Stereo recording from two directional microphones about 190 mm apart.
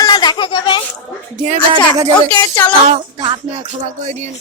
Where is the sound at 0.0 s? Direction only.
20° left (ahead or behind).